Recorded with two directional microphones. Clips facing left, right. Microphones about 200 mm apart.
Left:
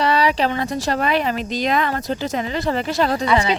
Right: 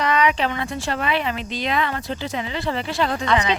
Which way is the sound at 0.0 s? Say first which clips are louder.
Left 2 dB; 35° left (ahead or behind).